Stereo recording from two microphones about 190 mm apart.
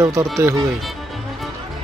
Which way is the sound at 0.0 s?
15° right (ahead or behind).